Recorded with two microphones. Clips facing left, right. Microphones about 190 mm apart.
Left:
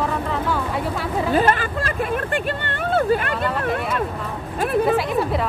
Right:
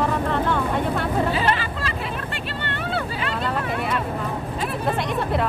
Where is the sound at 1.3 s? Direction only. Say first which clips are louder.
Left 4 dB; 50° left (ahead or behind).